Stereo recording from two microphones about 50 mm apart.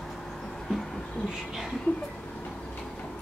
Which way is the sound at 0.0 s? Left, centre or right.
Centre.